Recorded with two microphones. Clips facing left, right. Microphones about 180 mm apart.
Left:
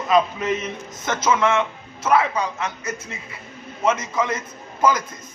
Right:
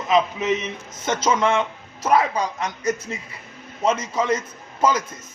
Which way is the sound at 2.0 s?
35° right (ahead or behind).